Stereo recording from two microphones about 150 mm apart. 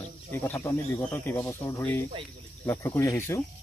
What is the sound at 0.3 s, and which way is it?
Speech, 15° left (ahead or behind).